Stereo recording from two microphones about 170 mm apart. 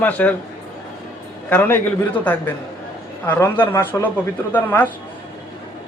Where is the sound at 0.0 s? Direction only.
10° left (ahead or behind).